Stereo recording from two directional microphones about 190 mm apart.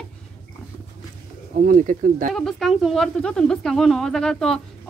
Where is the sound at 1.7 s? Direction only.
45° right (ahead or behind).